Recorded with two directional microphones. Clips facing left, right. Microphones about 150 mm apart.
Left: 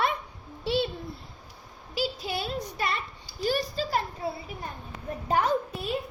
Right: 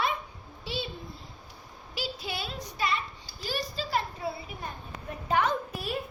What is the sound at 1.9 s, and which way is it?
Child singing, 45° left (ahead or behind).